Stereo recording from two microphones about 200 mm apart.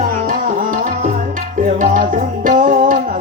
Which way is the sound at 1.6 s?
40° right (ahead or behind).